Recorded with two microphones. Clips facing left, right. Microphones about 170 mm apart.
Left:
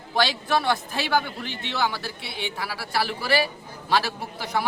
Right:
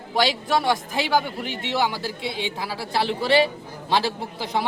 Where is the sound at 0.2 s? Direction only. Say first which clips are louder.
Right 2 dB; 15° right (ahead or behind).